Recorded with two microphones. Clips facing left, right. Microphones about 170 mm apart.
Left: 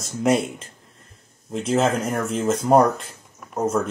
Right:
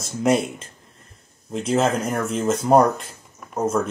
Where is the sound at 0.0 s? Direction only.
Centre (ahead or behind).